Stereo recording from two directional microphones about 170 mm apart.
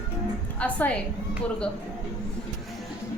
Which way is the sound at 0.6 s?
10° left (ahead or behind).